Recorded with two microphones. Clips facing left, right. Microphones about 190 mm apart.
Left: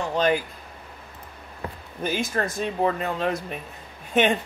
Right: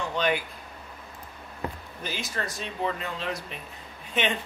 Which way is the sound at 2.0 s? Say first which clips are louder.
Left 8 dB; 50° left (ahead or behind).